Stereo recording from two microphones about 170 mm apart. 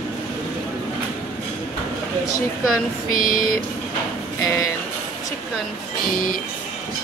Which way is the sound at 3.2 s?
55° left (ahead or behind).